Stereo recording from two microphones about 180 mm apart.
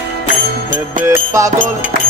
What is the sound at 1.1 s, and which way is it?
Music, 15° right (ahead or behind).